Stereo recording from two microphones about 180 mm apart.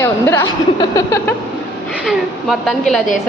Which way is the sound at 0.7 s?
15° left (ahead or behind).